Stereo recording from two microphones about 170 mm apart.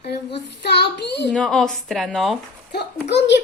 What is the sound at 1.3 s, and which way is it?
A woman's voice, 5° left (ahead or behind).